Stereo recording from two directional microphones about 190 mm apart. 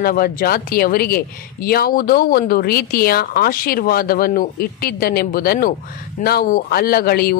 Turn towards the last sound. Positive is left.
turn(degrees=55)  # may be behind; listen again after turning